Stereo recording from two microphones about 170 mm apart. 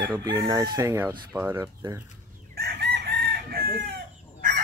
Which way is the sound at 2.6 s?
75° right (ahead or behind).